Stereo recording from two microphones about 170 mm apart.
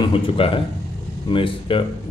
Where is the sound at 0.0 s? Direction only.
30° left (ahead or behind).